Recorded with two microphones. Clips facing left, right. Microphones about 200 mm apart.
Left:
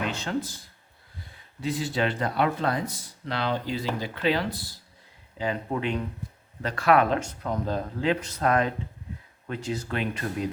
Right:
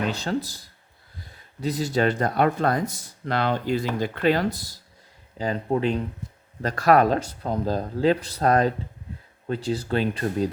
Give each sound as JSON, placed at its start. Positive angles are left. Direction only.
{"t": 0.1, "sound": "speech", "side_deg": -35}